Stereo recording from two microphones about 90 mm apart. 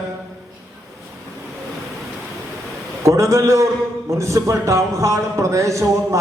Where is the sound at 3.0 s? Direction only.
35° right (ahead or behind).